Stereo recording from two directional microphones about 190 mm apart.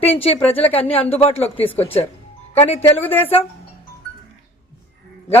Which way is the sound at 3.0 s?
10° left (ahead or behind).